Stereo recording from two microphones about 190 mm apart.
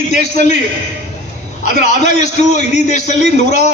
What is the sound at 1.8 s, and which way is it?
A man's voice, 40° left (ahead or behind).